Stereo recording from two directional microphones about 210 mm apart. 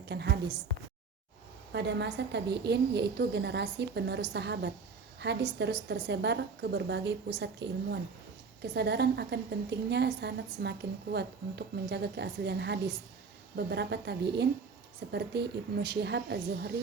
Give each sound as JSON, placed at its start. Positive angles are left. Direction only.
{"t": 0.1, "sound": "a woman's voice", "side_deg": -55}
{"t": 1.7, "sound": "a woman's voice", "side_deg": -55}